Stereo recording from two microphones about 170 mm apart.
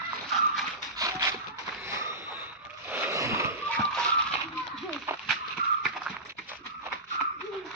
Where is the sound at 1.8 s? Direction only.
15° right (ahead or behind).